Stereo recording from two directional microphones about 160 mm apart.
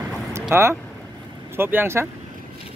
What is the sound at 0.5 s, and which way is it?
Speech, 15° right (ahead or behind).